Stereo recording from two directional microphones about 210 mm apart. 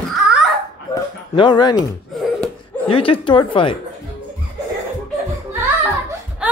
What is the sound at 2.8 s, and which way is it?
Speech, 25° left (ahead or behind).